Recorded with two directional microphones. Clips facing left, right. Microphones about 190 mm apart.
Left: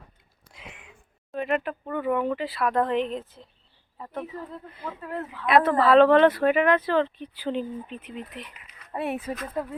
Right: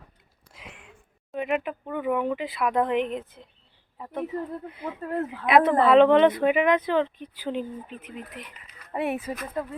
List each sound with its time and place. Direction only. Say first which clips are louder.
0.5 s a sound: even; centre (ahead or behind)
1.5 s speech: left 1 dB; 5° right (ahead or behind)
4.9 s speech: right 5 dB; 40° right (ahead or behind)
5.5 s speech: right 1 dB; 20° right (ahead or behind)